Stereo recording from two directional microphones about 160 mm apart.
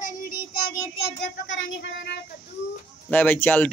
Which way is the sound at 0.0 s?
65° left (ahead or behind).